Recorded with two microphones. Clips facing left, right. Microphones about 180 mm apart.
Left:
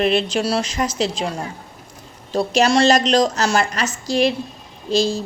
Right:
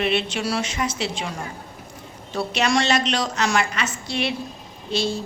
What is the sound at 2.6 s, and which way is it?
Speech, 35° left (ahead or behind).